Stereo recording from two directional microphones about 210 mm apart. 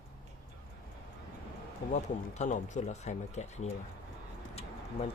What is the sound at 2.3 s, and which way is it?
Speech, 35° left (ahead or behind).